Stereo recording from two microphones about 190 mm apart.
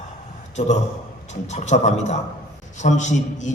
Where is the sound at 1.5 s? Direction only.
35° left (ahead or behind).